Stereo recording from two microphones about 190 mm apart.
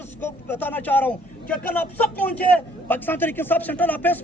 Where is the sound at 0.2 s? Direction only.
10° left (ahead or behind).